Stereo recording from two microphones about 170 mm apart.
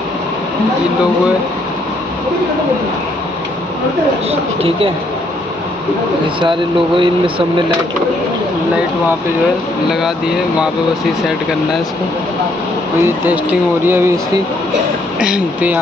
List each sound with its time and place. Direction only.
4.3 s speech: 35° right (ahead or behind)
7.0 s speech: 30° right (ahead or behind)
9.8 s speech: centre (ahead or behind)
13.0 s speech: 10° right (ahead or behind)